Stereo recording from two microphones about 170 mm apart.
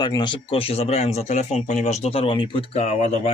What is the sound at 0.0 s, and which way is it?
Speech, 25° left (ahead or behind).